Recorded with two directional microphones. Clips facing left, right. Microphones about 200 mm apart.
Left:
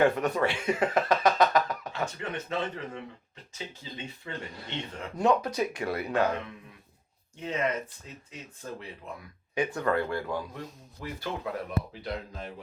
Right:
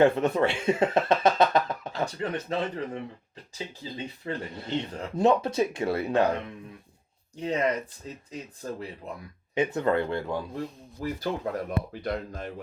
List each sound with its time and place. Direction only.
0.0 s speech: 25° right (ahead or behind)
9.6 s speech: 25° right (ahead or behind)
11.0 s speech: 40° right (ahead or behind)
12.0 s speech: 50° right (ahead or behind)